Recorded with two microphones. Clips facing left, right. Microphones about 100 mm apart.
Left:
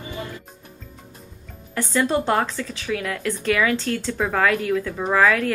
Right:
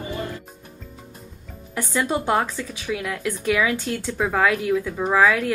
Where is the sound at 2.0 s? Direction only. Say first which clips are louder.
Left 1 dB; 10° right (ahead or behind).